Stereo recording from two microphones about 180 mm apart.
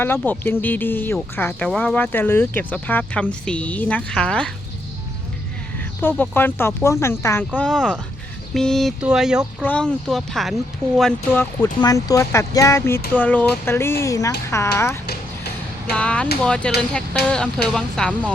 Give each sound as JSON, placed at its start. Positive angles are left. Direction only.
{"t": 0.0, "sound": "speech", "side_deg": 10}
{"t": 6.0, "sound": "speech", "side_deg": 10}
{"t": 11.6, "sound": "speech", "side_deg": 20}